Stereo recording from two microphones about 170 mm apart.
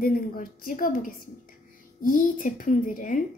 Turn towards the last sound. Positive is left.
turn(degrees=50)  # may be behind; listen again after turning